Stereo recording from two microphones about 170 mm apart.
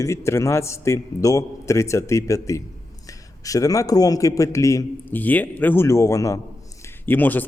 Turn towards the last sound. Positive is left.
turn(degrees=10)  # may be behind; listen again after turning